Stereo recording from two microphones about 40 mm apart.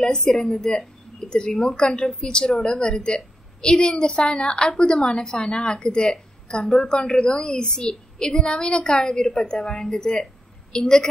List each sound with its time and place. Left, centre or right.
0.0 s a woman's voice: centre